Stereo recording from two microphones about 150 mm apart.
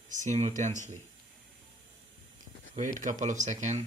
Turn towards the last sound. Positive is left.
turn(degrees=-50)  # may be behind; listen again after turning